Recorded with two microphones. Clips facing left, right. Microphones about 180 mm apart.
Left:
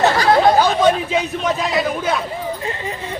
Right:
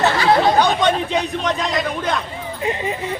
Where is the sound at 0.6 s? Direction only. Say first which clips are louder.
Left 2 dB; 5° left (ahead or behind).